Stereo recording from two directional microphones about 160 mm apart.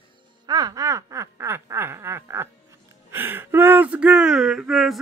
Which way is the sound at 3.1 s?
15° right (ahead or behind).